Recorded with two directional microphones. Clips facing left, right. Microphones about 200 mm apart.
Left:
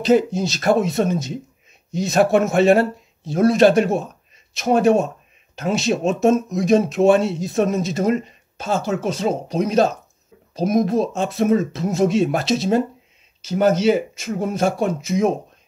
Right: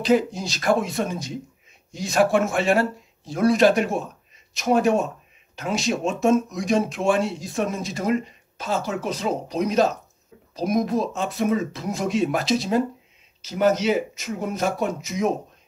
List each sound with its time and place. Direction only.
0.0 s speech: 25° left (ahead or behind)